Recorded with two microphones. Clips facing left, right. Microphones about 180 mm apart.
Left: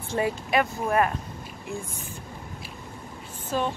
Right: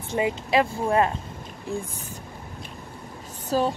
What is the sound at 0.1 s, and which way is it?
Speech, 20° right (ahead or behind).